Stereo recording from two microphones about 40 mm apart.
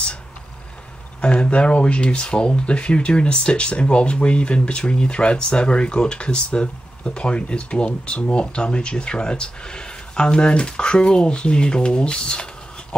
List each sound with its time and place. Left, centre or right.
1.2 s speech: left